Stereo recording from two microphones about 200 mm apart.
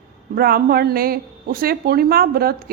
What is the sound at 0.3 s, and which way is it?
Speech, 50° right (ahead or behind).